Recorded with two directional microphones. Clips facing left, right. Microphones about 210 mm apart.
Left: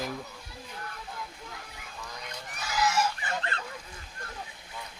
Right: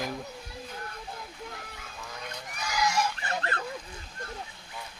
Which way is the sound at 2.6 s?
5° left (ahead or behind).